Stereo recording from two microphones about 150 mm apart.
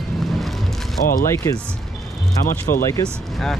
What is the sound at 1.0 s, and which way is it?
Speech, 65° left (ahead or behind).